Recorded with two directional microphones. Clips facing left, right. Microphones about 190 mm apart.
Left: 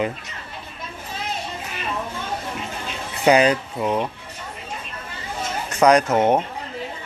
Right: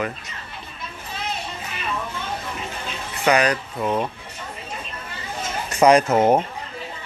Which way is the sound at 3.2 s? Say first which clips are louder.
Left 3 dB; 25° left (ahead or behind).